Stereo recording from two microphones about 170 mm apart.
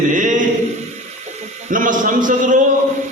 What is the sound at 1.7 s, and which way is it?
Speech, 50° right (ahead or behind).